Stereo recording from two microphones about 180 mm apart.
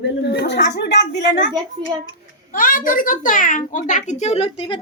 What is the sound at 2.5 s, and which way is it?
A child's voice, 50° left (ahead or behind).